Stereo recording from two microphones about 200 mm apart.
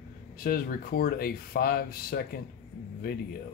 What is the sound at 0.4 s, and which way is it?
Speech, 45° left (ahead or behind).